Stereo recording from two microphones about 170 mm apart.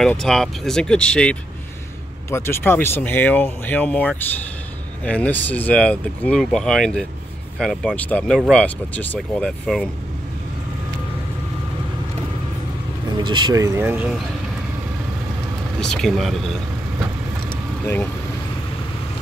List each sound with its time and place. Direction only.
0.0 s speech: 5° left (ahead or behind)
13.1 s speech: 25° right (ahead or behind); by 14.2 s 5° right (ahead or behind)
15.8 s speech: 5° left (ahead or behind)